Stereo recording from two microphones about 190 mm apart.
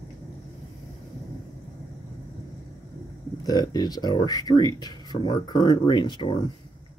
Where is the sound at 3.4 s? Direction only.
20° left (ahead or behind).